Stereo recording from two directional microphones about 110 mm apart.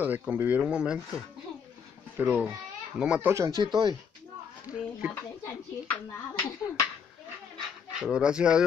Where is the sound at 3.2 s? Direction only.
30° right (ahead or behind).